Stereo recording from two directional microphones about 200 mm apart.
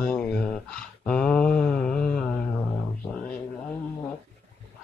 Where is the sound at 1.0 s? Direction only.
5° left (ahead or behind).